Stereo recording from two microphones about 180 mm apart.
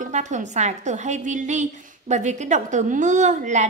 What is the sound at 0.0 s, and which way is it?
A woman's voice, 40° right (ahead or behind).